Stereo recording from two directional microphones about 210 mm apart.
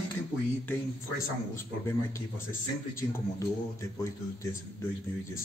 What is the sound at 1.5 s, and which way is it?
Speech, 10° left (ahead or behind).